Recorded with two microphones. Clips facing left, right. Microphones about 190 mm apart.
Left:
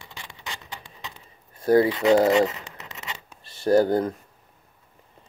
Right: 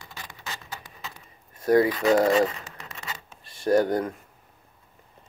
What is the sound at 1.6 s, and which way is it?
Speech, 30° left (ahead or behind).